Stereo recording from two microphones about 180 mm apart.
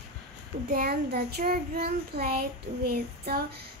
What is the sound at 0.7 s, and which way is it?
Child singing, 60° right (ahead or behind).